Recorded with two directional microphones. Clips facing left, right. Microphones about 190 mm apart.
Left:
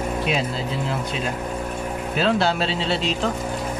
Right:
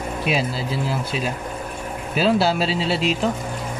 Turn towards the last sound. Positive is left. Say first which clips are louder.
# right 2 dB
turn(degrees=-5)  # may be behind; listen again after turning